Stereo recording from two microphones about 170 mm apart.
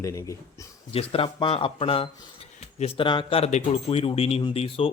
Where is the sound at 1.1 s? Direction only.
30° left (ahead or behind).